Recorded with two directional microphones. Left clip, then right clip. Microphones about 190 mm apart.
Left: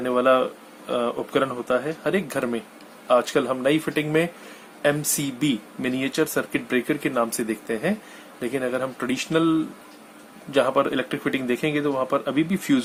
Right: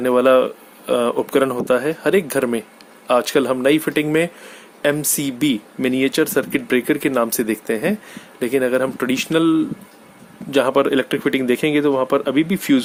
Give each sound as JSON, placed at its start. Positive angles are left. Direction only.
{"t": 0.0, "sound": "speech", "side_deg": -55}